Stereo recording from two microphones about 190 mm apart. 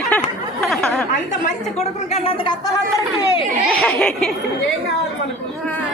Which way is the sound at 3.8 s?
5° left (ahead or behind).